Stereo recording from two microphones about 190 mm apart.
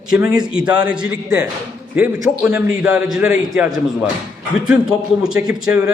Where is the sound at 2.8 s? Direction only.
5° right (ahead or behind).